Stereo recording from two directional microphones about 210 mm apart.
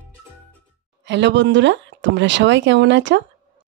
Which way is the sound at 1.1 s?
60° right (ahead or behind).